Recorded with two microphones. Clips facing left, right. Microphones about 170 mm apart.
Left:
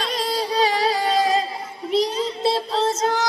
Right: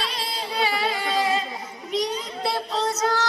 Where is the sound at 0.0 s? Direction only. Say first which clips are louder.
Left 7 dB; 45° left (ahead or behind).